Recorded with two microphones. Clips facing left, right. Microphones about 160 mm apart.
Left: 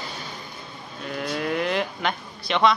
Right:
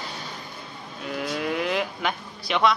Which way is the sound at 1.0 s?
5° right (ahead or behind).